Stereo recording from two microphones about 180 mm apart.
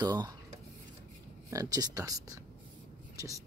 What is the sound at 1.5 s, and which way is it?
Speech, 20° right (ahead or behind).